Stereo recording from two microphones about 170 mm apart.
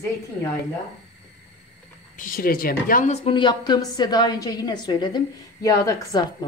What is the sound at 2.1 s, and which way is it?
Speech, 55° left (ahead or behind).